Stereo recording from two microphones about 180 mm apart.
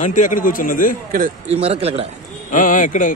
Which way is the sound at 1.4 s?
35° right (ahead or behind).